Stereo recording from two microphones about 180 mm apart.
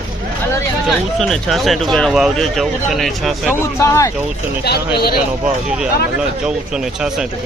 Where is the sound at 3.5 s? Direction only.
15° left (ahead or behind).